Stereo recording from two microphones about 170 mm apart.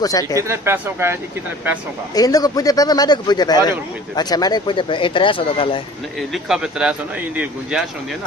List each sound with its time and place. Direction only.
0.0 s speech: 20° left (ahead or behind)
0.4 s speech: 15° right (ahead or behind)
2.1 s speech: 20° left (ahead or behind)
6.3 s speech: 5° right (ahead or behind)